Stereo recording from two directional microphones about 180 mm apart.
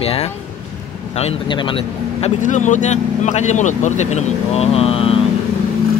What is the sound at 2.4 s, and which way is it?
Speech, 45° left (ahead or behind).